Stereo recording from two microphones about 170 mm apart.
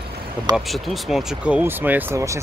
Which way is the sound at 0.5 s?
Centre (ahead or behind).